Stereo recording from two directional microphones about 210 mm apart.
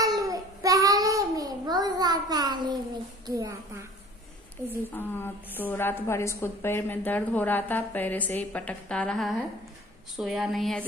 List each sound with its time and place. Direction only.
0.0 s child singing: 15° right (ahead or behind)
3.3 s a woman's voice: 15° right (ahead or behind)
4.9 s a woman's voice: 10° left (ahead or behind)